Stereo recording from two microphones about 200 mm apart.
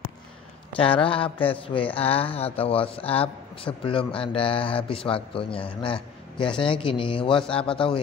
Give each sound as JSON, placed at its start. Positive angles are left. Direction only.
{"t": 0.7, "sound": "a man's voice", "side_deg": 25}